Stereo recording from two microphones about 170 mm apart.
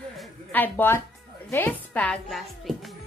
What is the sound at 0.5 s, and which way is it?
A woman's voice, 10° left (ahead or behind).